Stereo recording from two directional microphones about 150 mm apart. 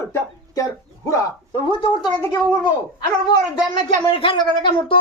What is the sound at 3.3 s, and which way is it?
A woman's voice, 30° left (ahead or behind).